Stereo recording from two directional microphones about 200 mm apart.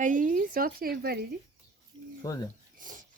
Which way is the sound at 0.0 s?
40° right (ahead or behind).